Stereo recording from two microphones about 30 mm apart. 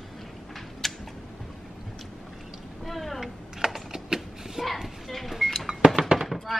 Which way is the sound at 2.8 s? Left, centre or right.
Centre.